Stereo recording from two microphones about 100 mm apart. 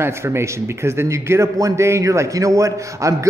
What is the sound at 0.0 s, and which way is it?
A man's voice, 25° right (ahead or behind).